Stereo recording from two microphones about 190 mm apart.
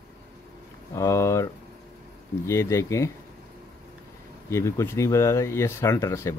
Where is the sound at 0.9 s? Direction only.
15° left (ahead or behind).